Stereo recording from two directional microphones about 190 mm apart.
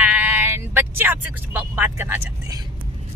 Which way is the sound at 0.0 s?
10° right (ahead or behind).